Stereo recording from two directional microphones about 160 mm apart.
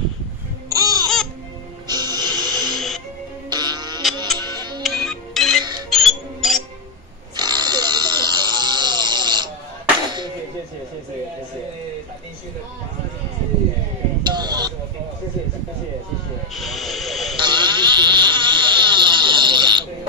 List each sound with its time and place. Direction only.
0.7 s laughter: 25° right (ahead or behind)
1.0 s music: 5° left (ahead or behind)
1.9 s music: 25° right (ahead or behind)
2.7 s music: centre (ahead or behind)
3.4 s music: 25° right (ahead or behind)
4.8 s music: 5° left (ahead or behind)
5.6 s music: 25° right (ahead or behind)
5.9 s music: centre (ahead or behind)
7.3 s a sound: 25° right (ahead or behind)
14.2 s a sound: 25° right (ahead or behind)
16.5 s hiss: centre (ahead or behind)
17.4 s a sound: 30° right (ahead or behind)